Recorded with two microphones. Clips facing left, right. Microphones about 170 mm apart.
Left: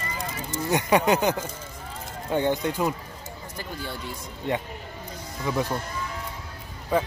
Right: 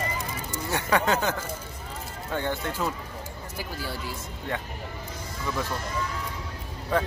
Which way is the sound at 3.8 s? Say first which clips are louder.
Even; 5° right (ahead or behind).